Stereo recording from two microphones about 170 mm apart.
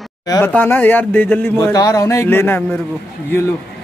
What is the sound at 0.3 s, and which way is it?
Speech, 10° left (ahead or behind).